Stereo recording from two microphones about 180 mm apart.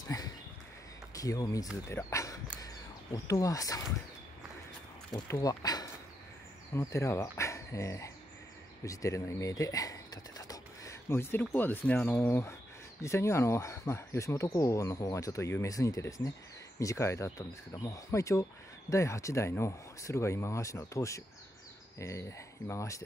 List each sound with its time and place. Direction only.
1.1 s speech: 20° left (ahead or behind)
2.6 s a sound: 20° left (ahead or behind)
5.1 s speech: 20° left (ahead or behind)